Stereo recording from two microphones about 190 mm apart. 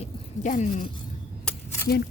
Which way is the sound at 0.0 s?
40° left (ahead or behind).